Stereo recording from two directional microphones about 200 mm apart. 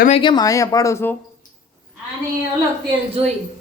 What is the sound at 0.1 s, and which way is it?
Speech, 25° left (ahead or behind).